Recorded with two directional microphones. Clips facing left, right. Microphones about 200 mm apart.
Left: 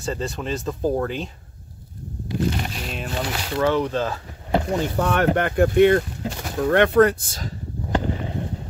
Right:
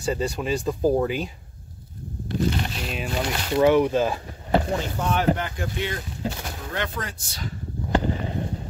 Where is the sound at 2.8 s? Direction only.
5° right (ahead or behind).